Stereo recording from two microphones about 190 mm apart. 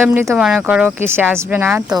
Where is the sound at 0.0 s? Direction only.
10° right (ahead or behind).